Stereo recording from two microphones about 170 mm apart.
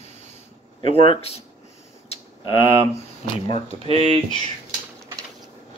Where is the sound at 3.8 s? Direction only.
35° right (ahead or behind).